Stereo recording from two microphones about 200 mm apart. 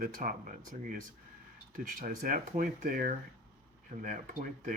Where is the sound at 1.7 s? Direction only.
40° right (ahead or behind).